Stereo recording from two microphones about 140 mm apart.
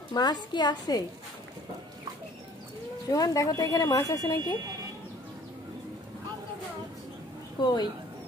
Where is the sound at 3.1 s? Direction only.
25° left (ahead or behind).